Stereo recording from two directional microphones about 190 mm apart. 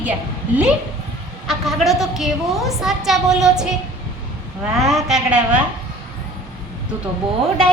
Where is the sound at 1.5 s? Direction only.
Centre (ahead or behind).